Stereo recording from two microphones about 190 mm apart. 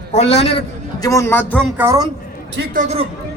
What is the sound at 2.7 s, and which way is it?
Speech, 35° right (ahead or behind).